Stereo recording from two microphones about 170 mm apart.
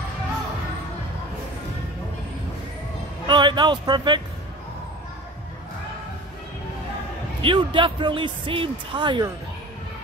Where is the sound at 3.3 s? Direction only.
25° right (ahead or behind).